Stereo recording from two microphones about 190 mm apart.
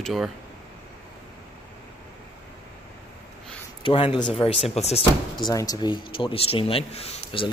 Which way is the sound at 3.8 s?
30° left (ahead or behind).